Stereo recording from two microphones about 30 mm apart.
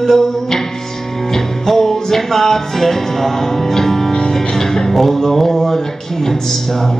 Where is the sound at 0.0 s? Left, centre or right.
Centre.